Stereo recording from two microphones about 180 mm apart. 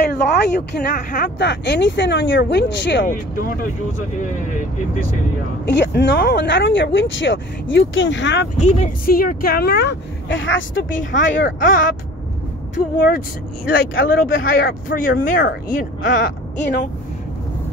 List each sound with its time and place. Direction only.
0.0 s a sound: 65° left (ahead or behind)
0.8 s speech: 50° left (ahead or behind)
1.4 s speech: 75° left (ahead or behind)
3.1 s speech: 50° left (ahead or behind)
5.7 s speech: 75° left (ahead or behind)
8.5 s a woman's voice: 40° left (ahead or behind)
9.0 s a woman's voice: 50° left (ahead or behind); by 10.9 s 90° left
11.0 s speech: 45° left (ahead or behind)